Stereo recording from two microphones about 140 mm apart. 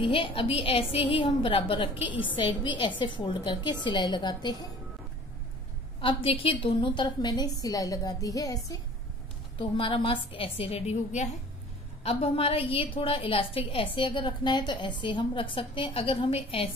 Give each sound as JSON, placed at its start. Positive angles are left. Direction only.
{"t": 0.0, "sound": "a woman's voice", "side_deg": 40}
{"t": 5.9, "sound": "a woman's voice", "side_deg": 40}
{"t": 9.6, "sound": "a woman's voice", "side_deg": 40}